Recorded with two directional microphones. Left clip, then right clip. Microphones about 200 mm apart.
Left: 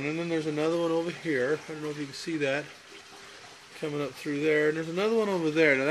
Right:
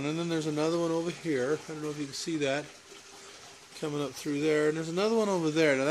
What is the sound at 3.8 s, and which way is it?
Speech, 15° right (ahead or behind).